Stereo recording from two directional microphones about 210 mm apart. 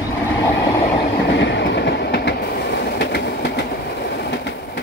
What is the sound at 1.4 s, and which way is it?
Train, 55° left (ahead or behind).